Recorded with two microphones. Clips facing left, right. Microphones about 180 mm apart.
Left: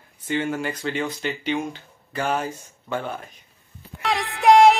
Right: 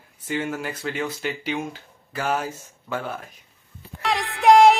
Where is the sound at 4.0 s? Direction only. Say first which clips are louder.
Even; centre (ahead or behind).